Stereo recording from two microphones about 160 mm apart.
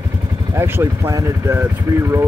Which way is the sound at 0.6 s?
15° right (ahead or behind).